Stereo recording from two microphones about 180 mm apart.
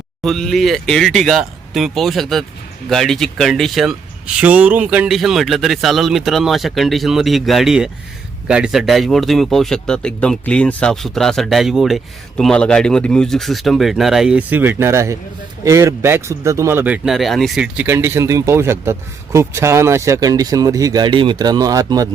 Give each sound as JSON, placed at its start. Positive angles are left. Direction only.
{"t": 0.2, "sound": "speech", "side_deg": 0}